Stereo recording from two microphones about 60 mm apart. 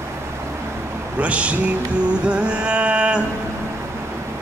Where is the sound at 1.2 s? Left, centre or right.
Right.